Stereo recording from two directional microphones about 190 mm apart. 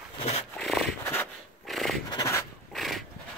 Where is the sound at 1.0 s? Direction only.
15° left (ahead or behind).